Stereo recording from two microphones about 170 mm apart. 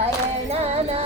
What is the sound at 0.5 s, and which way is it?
Music, 35° right (ahead or behind).